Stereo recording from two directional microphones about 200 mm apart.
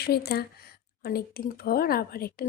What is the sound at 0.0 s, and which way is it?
Speech, 50° left (ahead or behind).